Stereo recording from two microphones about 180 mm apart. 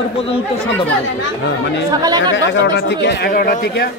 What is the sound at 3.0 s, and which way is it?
Speech, 65° left (ahead or behind).